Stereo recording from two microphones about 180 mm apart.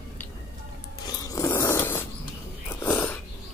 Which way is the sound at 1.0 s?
20° left (ahead or behind).